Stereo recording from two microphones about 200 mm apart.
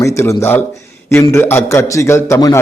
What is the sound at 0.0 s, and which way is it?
A man's voice, 15° left (ahead or behind).